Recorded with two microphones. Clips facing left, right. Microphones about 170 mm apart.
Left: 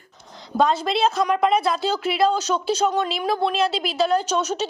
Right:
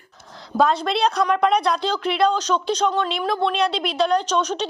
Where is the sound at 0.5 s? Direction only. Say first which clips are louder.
Right 1 dB; centre (ahead or behind).